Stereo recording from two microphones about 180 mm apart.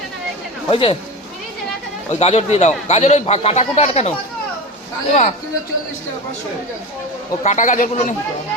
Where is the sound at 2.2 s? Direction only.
35° left (ahead or behind).